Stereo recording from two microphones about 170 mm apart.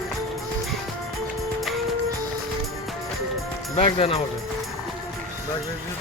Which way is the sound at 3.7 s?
35° left (ahead or behind).